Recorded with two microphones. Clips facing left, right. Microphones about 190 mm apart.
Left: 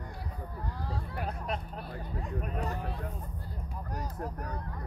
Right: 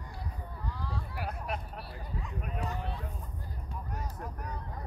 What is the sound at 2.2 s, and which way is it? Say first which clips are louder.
Speech: left 3 dB; 45° left (ahead or behind).